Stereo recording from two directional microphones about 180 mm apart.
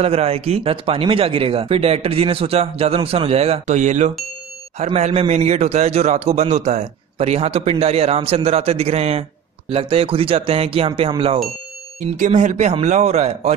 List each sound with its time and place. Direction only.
0.0 s a man's voice: 35° right (ahead or behind)
12.2 s a man's voice: 45° right (ahead or behind)